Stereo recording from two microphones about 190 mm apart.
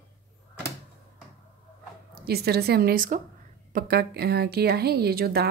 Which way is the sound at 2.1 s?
55° right (ahead or behind).